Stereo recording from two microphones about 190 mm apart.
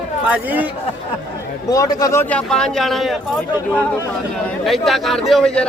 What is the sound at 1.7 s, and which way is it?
Speech, 20° left (ahead or behind).